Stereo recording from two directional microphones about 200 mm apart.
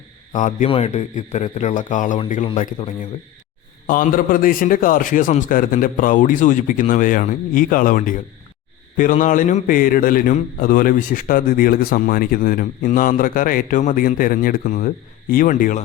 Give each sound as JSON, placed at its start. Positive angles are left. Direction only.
{"t": 0.3, "sound": "a man's voice", "side_deg": 40}
{"t": 2.1, "sound": "a man's voice", "side_deg": 25}